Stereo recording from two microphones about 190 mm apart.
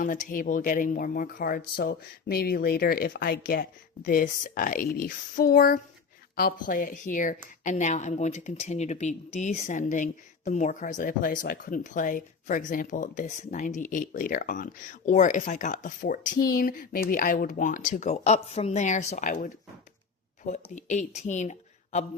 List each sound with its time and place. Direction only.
0.0 s speech: 45° left (ahead or behind)
20.5 s speech: 40° left (ahead or behind)